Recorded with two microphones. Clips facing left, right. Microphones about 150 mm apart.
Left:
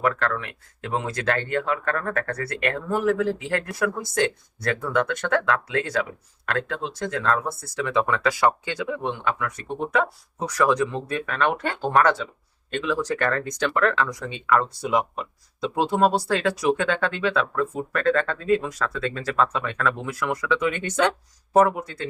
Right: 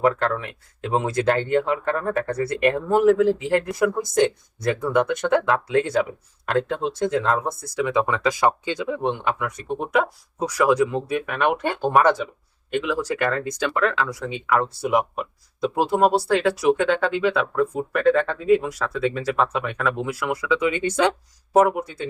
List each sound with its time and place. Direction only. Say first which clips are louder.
0.0 s speech: right 4 dB; 20° right (ahead or behind)